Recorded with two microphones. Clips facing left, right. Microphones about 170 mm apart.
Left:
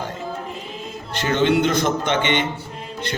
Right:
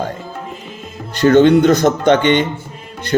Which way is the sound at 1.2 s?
50° right (ahead or behind).